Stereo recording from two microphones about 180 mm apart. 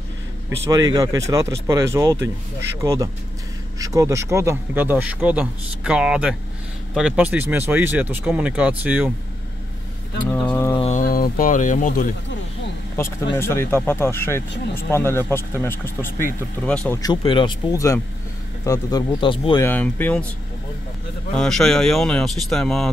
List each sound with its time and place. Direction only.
0.7 s a man's voice: 20° right (ahead or behind)
10.5 s speech: 15° left (ahead or behind)
10.8 s speech: 45° left (ahead or behind)
12.9 s speech: 15° left (ahead or behind)
17.0 s speech: 25° left (ahead or behind)
19.6 s speech: 10° left (ahead or behind)
21.4 s speech: centre (ahead or behind)